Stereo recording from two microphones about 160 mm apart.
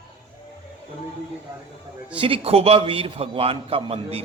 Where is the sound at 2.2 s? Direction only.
35° right (ahead or behind).